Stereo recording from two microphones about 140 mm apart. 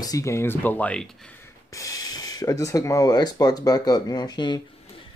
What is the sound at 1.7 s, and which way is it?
Speech, 25° left (ahead or behind).